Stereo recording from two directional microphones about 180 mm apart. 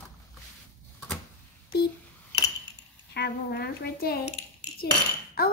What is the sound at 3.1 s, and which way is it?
A woman's voice, 65° left (ahead or behind).